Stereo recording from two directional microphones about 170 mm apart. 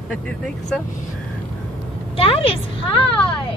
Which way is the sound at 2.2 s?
35° left (ahead or behind).